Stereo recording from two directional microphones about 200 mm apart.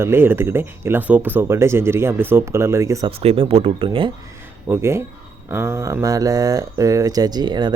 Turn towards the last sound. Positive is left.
turn(degrees=-20)  # may be behind; listen again after turning